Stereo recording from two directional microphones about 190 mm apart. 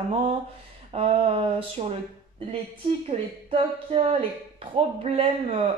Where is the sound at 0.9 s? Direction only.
30° right (ahead or behind).